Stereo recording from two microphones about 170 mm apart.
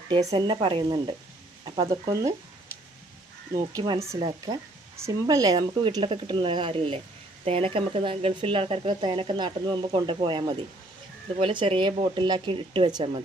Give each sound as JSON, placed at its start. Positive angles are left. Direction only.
{"t": 0.3, "sound": "speech", "side_deg": -30}
{"t": 3.8, "sound": "speech", "side_deg": -20}